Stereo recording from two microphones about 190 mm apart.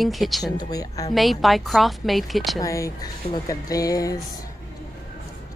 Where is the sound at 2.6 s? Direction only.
15° left (ahead or behind).